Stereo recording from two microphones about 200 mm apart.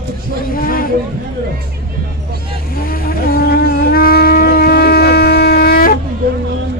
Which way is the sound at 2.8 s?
45° left (ahead or behind).